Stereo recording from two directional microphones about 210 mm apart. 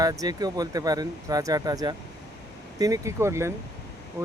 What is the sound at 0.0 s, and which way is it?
Speech, 15° right (ahead or behind).